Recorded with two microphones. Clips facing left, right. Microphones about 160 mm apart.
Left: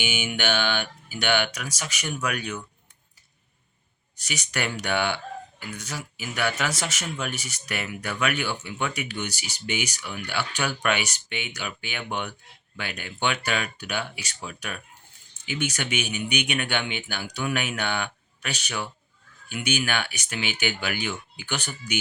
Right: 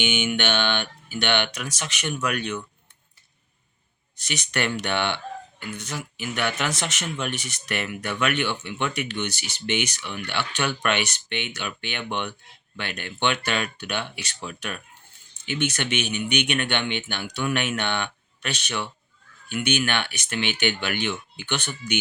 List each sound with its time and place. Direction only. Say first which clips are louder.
0.0 s speech: right 3 dB; 10° left (ahead or behind)
4.2 s speech: right 3 dB; 10° left (ahead or behind)